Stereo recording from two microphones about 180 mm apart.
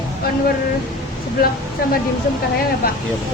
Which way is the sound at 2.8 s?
55° left (ahead or behind).